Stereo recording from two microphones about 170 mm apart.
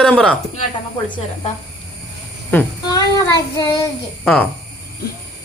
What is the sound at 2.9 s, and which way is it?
Child singing, 20° left (ahead or behind).